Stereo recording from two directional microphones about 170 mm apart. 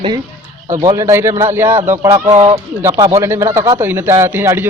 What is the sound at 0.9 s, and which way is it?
Speech, 15° right (ahead or behind).